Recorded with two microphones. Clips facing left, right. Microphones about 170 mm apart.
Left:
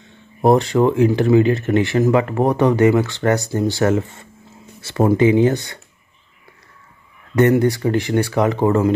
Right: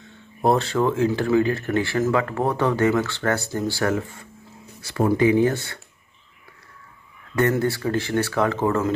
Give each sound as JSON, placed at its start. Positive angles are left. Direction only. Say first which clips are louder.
{"t": 0.0, "sound": "speech", "louder": "left 5 dB", "side_deg": 15}
{"t": 7.3, "sound": "speech", "louder": "left 6 dB", "side_deg": 20}